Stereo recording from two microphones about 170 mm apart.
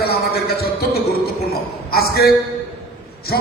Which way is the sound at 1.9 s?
65° left (ahead or behind).